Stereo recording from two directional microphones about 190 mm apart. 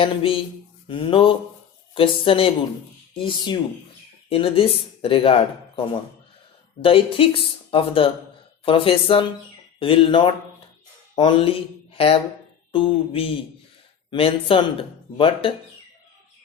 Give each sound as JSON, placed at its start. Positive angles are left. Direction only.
{"t": 0.0, "sound": "speech", "side_deg": 30}